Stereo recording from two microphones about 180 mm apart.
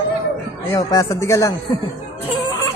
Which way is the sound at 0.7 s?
20° left (ahead or behind).